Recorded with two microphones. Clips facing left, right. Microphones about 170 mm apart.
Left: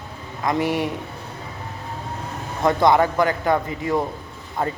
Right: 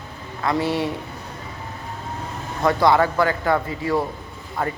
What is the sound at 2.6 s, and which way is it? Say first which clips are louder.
A man's voice: left 1 dB; 20° left (ahead or behind).